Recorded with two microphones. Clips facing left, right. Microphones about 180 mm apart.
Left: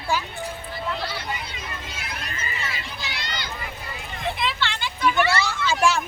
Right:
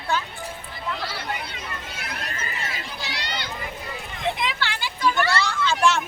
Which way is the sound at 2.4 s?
50° right (ahead or behind).